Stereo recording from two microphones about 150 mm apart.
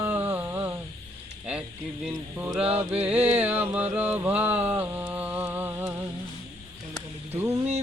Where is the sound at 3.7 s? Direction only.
10° right (ahead or behind).